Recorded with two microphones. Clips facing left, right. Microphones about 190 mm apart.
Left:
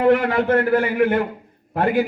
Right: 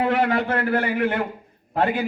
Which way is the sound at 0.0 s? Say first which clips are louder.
Left 4 dB; 55° left (ahead or behind).